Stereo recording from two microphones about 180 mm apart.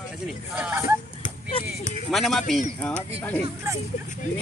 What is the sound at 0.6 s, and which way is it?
Speech, 10° right (ahead or behind).